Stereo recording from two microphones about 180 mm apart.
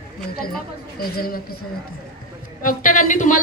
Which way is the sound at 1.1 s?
55° left (ahead or behind).